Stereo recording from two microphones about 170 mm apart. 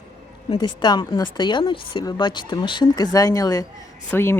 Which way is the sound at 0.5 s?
25° left (ahead or behind).